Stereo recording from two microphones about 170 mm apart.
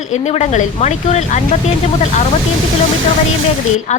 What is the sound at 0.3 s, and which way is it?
Speech, 40° left (ahead or behind).